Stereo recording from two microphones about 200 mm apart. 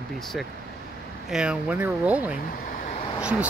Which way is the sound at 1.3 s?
5° right (ahead or behind).